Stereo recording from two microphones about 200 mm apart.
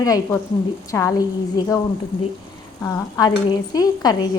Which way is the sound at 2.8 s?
20° left (ahead or behind).